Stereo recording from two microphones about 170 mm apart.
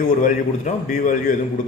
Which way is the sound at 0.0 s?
45° left (ahead or behind).